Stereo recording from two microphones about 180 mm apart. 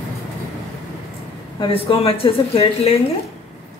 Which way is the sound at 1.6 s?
30° left (ahead or behind).